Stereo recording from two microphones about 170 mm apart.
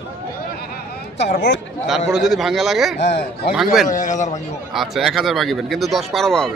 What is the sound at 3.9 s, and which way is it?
Speech, 50° left (ahead or behind).